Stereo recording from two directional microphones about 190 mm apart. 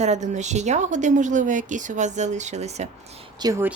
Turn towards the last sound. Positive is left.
turn(degrees=-20)  # may be behind; listen again after turning